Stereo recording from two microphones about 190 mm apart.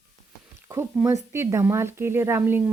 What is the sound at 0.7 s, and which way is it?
Speech, 15° right (ahead or behind).